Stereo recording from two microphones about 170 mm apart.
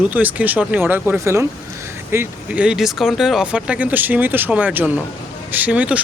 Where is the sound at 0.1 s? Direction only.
10° right (ahead or behind).